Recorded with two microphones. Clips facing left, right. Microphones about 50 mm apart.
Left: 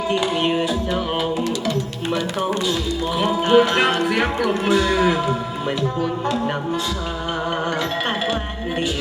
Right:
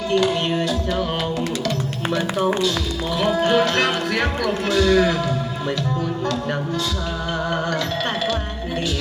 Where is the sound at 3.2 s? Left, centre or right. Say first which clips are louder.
Left 2 dB; left.